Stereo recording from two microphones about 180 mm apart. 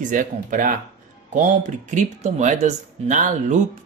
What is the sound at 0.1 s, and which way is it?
Speech, 50° right (ahead or behind).